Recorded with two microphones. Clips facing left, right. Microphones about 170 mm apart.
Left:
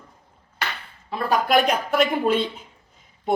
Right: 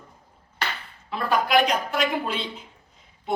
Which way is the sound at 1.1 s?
45° left (ahead or behind).